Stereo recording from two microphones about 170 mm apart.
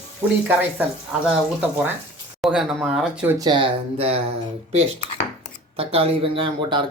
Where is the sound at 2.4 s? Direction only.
5° right (ahead or behind).